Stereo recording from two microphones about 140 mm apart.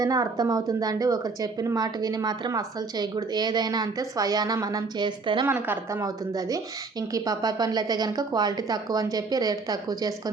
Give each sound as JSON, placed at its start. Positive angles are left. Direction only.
{"t": 0.0, "sound": "speech", "side_deg": -25}
{"t": 5.5, "sound": "speech", "side_deg": -15}